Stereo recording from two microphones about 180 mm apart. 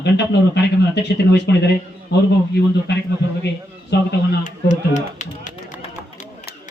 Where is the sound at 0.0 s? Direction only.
70° left (ahead or behind).